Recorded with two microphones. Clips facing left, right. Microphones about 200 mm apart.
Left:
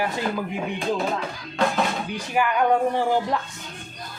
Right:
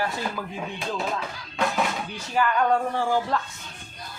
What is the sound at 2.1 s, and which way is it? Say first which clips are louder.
Speech: left 1 dB; 15° left (ahead or behind).